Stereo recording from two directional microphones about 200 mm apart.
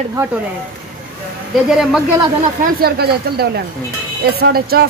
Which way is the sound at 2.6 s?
50° right (ahead or behind).